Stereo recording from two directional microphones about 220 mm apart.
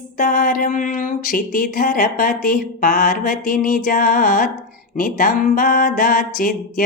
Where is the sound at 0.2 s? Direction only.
40° left (ahead or behind).